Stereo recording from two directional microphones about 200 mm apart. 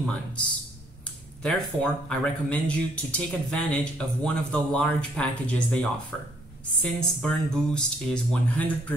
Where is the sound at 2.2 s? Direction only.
5° left (ahead or behind).